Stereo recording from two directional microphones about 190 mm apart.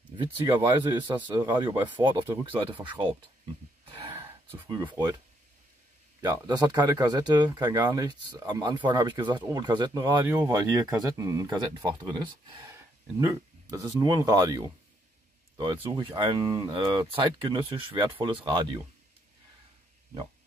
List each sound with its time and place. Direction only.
0.2 s speech: 25° right (ahead or behind)
3.8 s a sound: 30° right (ahead or behind)
4.6 s speech: 20° right (ahead or behind)
6.2 s speech: 20° right (ahead or behind)
13.7 s speech: 20° right (ahead or behind)